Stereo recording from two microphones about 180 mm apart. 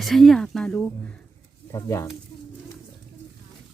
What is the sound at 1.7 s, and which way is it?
Speech, 15° left (ahead or behind).